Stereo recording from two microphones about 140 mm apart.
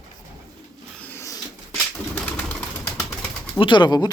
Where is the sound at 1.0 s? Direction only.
20° left (ahead or behind).